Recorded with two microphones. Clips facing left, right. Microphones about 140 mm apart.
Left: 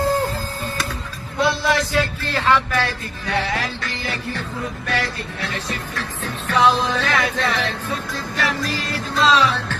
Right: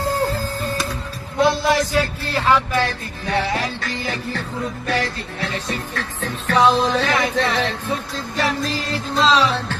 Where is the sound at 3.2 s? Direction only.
30° right (ahead or behind).